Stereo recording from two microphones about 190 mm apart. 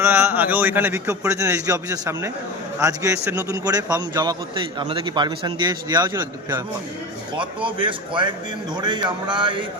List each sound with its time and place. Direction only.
0.0 s a man's voice: 10° right (ahead or behind)